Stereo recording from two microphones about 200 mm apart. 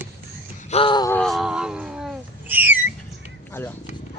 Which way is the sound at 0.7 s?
25° left (ahead or behind).